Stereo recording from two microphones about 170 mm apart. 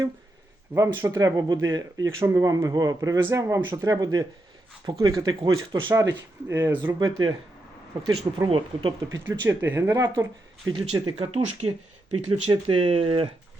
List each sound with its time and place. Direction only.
0.7 s speech: 20° right (ahead or behind)
5.9 s speech: 20° right (ahead or behind)
6.8 s speech: 25° right (ahead or behind)
8.4 s speech: 30° right (ahead or behind)
9.4 s speech: 15° right (ahead or behind); by 13.3 s 35° right (ahead or behind)